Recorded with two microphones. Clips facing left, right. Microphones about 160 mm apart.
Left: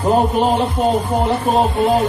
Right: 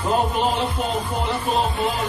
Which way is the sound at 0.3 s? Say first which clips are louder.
Left 6 dB; 45° left (ahead or behind).